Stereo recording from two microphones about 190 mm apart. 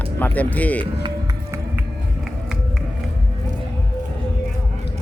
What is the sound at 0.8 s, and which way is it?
Speech, 25° right (ahead or behind).